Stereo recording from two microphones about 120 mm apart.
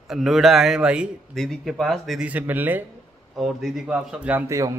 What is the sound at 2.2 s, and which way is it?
Speech, 15° right (ahead or behind).